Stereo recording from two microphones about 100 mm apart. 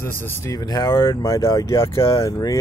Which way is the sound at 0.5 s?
40° left (ahead or behind).